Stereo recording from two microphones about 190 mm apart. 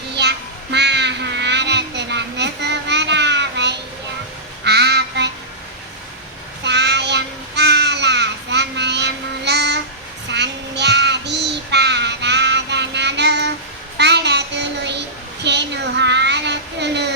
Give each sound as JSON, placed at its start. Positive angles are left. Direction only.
{"t": 0.1, "sound": "child singing", "side_deg": -60}
{"t": 6.7, "sound": "child singing", "side_deg": -65}